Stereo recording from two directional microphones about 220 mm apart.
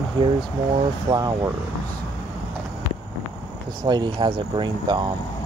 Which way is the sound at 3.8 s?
20° right (ahead or behind).